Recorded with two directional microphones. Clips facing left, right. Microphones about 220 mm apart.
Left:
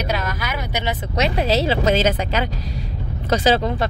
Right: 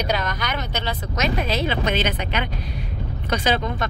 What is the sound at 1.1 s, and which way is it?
Speech, 30° left (ahead or behind).